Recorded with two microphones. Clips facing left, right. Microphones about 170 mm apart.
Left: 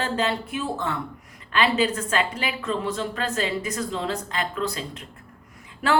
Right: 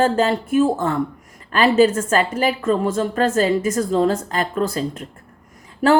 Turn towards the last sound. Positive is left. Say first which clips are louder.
# right 7 dB
turn(degrees=-40)  # may be behind; listen again after turning